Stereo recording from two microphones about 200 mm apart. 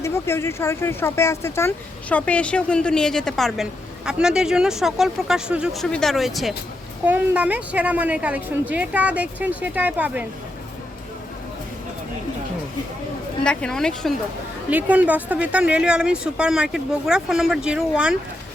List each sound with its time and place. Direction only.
0.0 s a woman's voice: 15° left (ahead or behind); by 10.2 s 10° right (ahead or behind)
13.4 s speech: 5° left (ahead or behind)
14.7 s speech: 5° right (ahead or behind)